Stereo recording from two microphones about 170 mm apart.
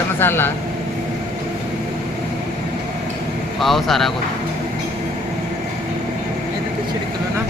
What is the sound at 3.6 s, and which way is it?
Speech, centre (ahead or behind).